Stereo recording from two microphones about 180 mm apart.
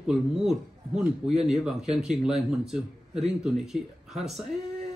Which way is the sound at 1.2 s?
35° right (ahead or behind).